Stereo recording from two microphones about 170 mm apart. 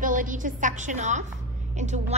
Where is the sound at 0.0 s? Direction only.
50° right (ahead or behind).